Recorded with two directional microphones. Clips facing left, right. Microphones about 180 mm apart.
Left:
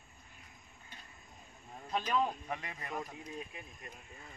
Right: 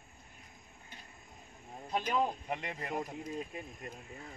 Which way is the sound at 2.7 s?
30° right (ahead or behind).